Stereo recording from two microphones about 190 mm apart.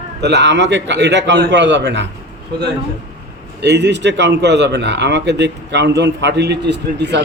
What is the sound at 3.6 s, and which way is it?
A man's voice, 65° right (ahead or behind).